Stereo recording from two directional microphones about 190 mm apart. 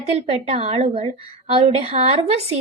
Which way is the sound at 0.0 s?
30° right (ahead or behind).